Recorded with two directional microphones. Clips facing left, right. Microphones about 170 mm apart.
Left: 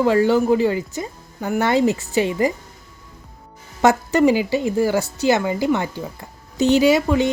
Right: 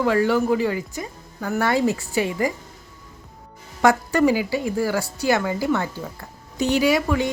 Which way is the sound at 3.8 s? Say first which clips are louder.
Left 2 dB; 20° left (ahead or behind).